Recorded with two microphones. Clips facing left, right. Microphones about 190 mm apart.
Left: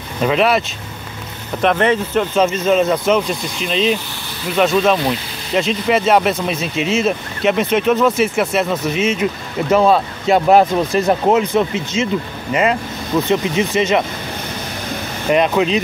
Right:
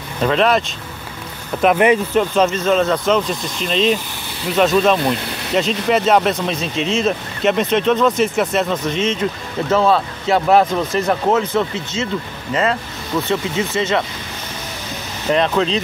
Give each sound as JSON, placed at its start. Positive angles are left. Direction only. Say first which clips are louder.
{"t": 0.2, "sound": "speech", "louder": "even", "side_deg": 5}
{"t": 1.6, "sound": "speech", "louder": "right 2 dB", "side_deg": -10}
{"t": 15.2, "sound": "speech", "louder": "left 2 dB", "side_deg": 10}